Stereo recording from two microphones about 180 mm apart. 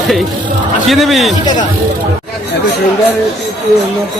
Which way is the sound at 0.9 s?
Centre (ahead or behind).